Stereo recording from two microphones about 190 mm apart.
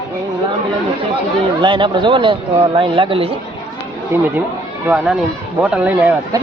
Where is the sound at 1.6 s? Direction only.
25° right (ahead or behind).